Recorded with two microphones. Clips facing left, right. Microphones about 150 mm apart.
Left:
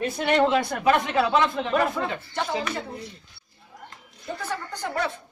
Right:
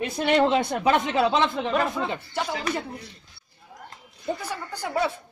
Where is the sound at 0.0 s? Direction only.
20° right (ahead or behind).